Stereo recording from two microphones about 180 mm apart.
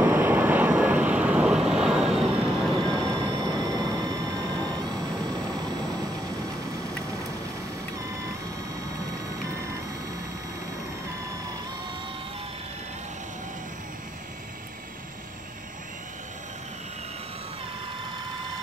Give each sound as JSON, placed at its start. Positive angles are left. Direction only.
{"t": 0.0, "sound": "vehicle", "side_deg": -10}
{"t": 3.3, "sound": "vehicle", "side_deg": -25}